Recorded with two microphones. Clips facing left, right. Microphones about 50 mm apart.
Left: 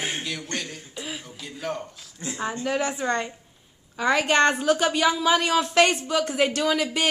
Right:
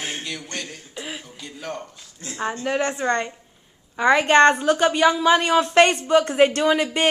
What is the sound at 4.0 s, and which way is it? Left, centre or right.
Speech, right.